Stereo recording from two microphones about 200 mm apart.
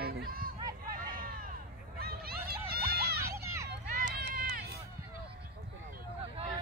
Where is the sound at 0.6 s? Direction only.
20° right (ahead or behind).